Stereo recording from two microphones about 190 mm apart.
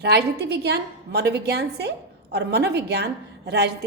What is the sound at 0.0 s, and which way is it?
A woman's voice, 60° right (ahead or behind).